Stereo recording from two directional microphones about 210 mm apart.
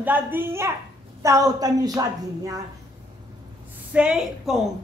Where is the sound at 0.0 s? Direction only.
10° right (ahead or behind).